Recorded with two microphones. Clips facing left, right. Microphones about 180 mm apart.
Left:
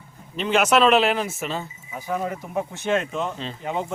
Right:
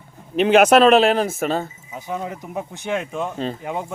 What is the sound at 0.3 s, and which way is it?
A man's voice, 60° right (ahead or behind).